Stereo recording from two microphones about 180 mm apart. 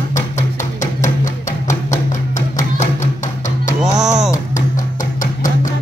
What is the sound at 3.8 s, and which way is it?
Music, 5° right (ahead or behind).